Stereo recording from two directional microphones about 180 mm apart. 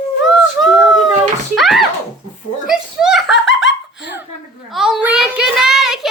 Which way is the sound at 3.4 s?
90° left.